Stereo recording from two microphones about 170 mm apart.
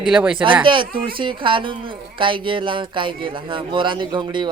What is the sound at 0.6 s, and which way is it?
Speech, 30° right (ahead or behind).